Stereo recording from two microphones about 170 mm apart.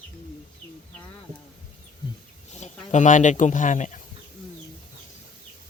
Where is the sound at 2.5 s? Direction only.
45° left (ahead or behind).